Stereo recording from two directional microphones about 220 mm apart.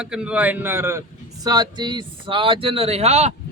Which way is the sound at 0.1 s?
5° right (ahead or behind).